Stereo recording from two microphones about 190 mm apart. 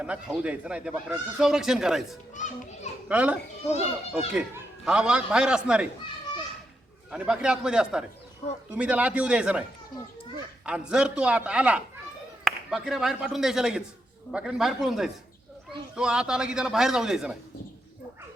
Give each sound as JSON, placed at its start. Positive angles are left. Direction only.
{"t": 0.0, "sound": "speech", "side_deg": -5}
{"t": 2.3, "sound": "a child's voice", "side_deg": 40}
{"t": 3.1, "sound": "a child's voice", "side_deg": -5}
{"t": 7.1, "sound": "speech", "side_deg": -5}
{"t": 10.7, "sound": "speech", "side_deg": -5}